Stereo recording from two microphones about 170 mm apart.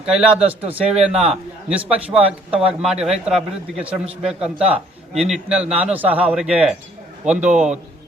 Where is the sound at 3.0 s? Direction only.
5° right (ahead or behind).